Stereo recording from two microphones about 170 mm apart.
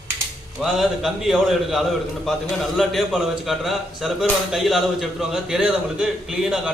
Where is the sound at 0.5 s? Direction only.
Centre (ahead or behind).